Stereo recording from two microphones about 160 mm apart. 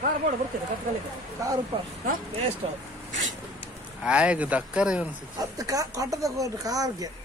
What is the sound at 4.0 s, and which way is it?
Speech, 5° right (ahead or behind).